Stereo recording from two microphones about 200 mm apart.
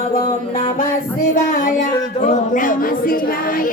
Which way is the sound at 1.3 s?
40° left (ahead or behind).